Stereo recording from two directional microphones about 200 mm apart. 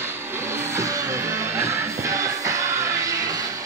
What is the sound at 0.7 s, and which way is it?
Music, 15° right (ahead or behind).